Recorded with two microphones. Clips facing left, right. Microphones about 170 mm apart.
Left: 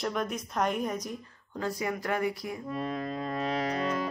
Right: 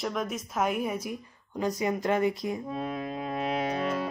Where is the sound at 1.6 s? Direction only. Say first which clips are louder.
Right 4 dB; 20° right (ahead or behind).